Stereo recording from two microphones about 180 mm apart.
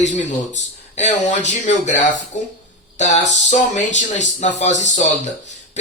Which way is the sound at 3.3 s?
40° left (ahead or behind).